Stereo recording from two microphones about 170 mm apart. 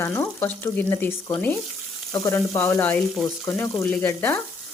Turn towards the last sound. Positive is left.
turn(degrees=10)  # may be behind; listen again after turning